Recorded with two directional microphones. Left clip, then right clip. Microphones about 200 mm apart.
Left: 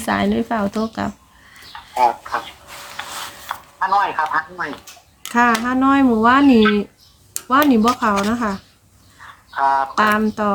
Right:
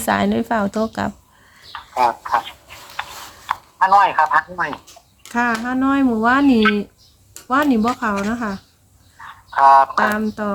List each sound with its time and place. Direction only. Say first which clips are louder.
0.0 s speech: right 1 dB; 15° right (ahead or behind)
1.7 s a sound: left 1 dB; 50° right (ahead or behind)
3.5 s speech: right 4 dB; 45° right (ahead or behind)
5.3 s speech: left 4 dB; centre (ahead or behind)
9.6 s a sound: right 6 dB; 45° right (ahead or behind)
9.9 s speech: left 2 dB; centre (ahead or behind)